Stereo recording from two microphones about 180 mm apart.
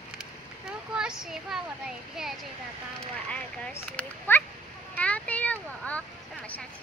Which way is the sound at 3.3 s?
10° left (ahead or behind).